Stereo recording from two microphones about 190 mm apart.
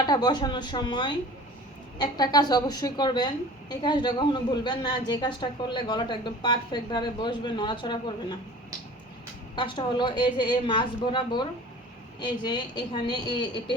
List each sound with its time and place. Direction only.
0.0 s a woman's voice: 20° left (ahead or behind)
9.6 s a woman's voice: 25° left (ahead or behind)